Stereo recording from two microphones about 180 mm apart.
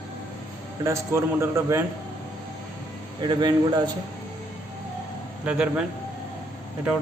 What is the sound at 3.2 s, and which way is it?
Speech, 25° right (ahead or behind).